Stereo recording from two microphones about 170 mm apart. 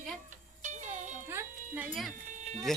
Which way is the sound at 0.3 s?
45° right (ahead or behind).